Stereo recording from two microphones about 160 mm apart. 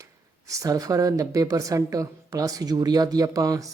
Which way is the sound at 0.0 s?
20° right (ahead or behind).